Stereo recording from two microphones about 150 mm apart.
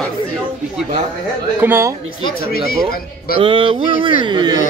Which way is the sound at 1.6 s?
15° right (ahead or behind).